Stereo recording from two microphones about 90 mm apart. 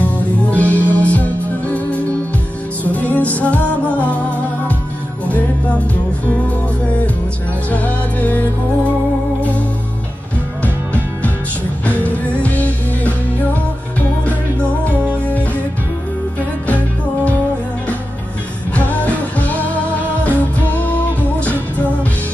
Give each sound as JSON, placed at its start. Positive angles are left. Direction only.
{"t": 0.0, "sound": "music", "side_deg": 15}
{"t": 7.7, "sound": "music", "side_deg": 15}
{"t": 10.6, "sound": "music", "side_deg": 20}
{"t": 16.6, "sound": "music", "side_deg": 15}
{"t": 18.8, "sound": "music", "side_deg": 20}